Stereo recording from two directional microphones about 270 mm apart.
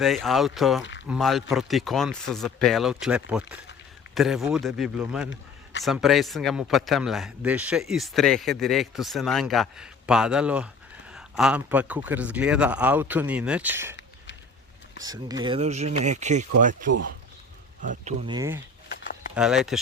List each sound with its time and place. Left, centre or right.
0.0 s speech: centre
15.0 s speech: centre; by 16.9 s right
18.0 s speech: centre